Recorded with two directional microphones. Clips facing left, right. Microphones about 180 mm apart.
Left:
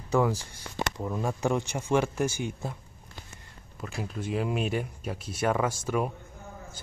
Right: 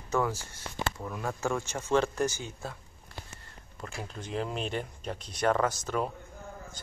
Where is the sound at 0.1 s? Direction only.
15° left (ahead or behind).